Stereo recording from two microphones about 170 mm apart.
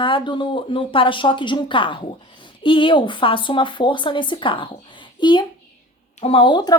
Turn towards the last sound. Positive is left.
turn(degrees=25)  # may be behind; listen again after turning